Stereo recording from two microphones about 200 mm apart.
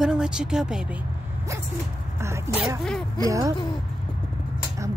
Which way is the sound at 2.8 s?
Centre (ahead or behind).